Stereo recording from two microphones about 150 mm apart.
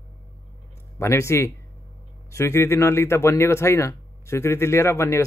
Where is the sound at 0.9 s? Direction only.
20° left (ahead or behind).